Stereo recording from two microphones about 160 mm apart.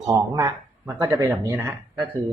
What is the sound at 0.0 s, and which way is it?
Speech, 20° right (ahead or behind).